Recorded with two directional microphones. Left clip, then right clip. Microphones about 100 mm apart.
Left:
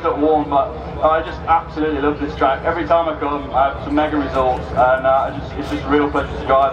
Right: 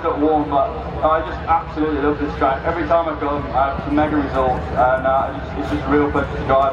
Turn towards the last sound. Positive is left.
turn(degrees=30)  # may be behind; listen again after turning